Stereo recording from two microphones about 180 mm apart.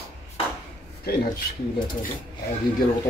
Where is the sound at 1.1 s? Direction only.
60° left (ahead or behind).